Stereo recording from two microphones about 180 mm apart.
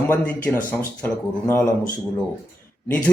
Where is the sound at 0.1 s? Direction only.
10° left (ahead or behind).